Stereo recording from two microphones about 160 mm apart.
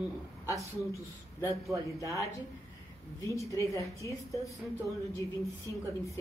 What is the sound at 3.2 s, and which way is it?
A woman's voice, 20° left (ahead or behind).